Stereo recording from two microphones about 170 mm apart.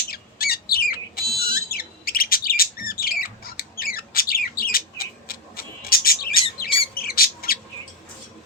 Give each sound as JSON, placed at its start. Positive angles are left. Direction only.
{"t": 0.1, "sound": "squawk", "side_deg": 65}
{"t": 1.4, "sound": "bird", "side_deg": 60}
{"t": 2.9, "sound": "squawk", "side_deg": 60}
{"t": 6.9, "sound": "bird", "side_deg": 60}